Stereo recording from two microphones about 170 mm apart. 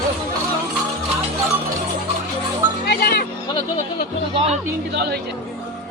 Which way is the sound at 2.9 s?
65° left (ahead or behind).